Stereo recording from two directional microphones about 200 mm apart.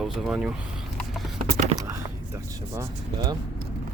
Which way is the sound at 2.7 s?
20° right (ahead or behind).